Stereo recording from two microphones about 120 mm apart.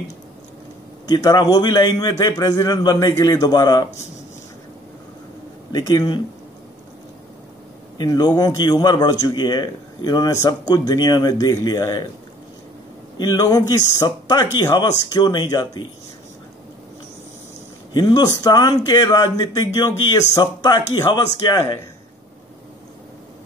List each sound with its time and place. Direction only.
1.0 s a man's voice: 30° left (ahead or behind)
5.7 s a man's voice: 30° left (ahead or behind)
8.0 s a man's voice: 35° left (ahead or behind)
13.2 s a man's voice: 35° left (ahead or behind)
17.9 s a man's voice: 35° left (ahead or behind)